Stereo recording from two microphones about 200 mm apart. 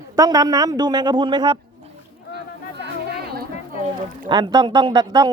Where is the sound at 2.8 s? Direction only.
55° right (ahead or behind).